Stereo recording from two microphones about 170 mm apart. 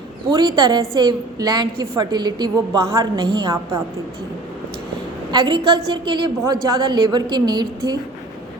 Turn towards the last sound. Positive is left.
turn(degrees=-25)  # may be behind; listen again after turning